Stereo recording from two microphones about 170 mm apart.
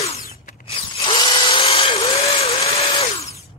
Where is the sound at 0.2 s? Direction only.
55° left (ahead or behind).